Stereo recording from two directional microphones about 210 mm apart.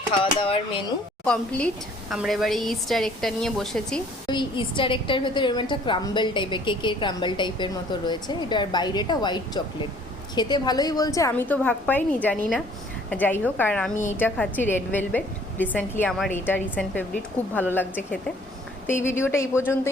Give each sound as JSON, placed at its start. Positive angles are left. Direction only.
{"t": 0.1, "sound": "a woman's voice", "side_deg": 25}
{"t": 1.2, "sound": "a woman's voice", "side_deg": 5}
{"t": 4.3, "sound": "a woman's voice", "side_deg": 20}